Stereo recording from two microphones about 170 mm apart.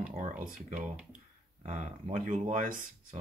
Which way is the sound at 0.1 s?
45° right (ahead or behind).